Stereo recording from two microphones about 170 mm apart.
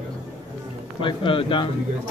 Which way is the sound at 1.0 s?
30° left (ahead or behind).